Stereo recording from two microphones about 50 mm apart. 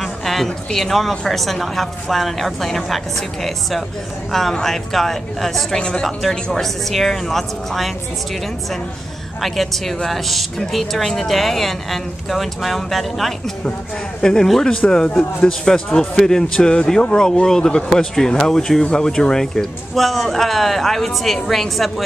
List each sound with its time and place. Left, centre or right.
0.0 s a sound: centre
0.7 s speech: centre
5.8 s speech: centre
6.5 s speech: centre
9.4 s speech: centre